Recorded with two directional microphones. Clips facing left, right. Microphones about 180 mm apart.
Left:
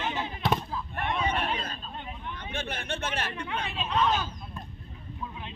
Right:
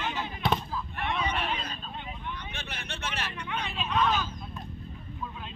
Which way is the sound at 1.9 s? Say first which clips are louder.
Even; 45° left (ahead or behind).